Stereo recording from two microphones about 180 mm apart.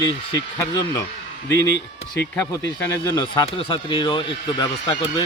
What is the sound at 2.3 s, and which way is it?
Speech, 15° left (ahead or behind).